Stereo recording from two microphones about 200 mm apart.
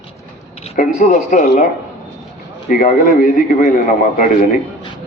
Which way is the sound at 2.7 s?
45° left (ahead or behind).